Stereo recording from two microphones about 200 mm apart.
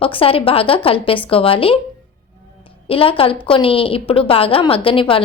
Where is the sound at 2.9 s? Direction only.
25° left (ahead or behind).